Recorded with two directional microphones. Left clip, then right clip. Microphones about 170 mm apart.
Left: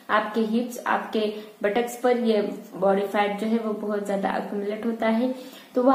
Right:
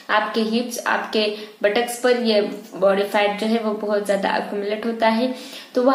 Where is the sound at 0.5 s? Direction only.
5° right (ahead or behind).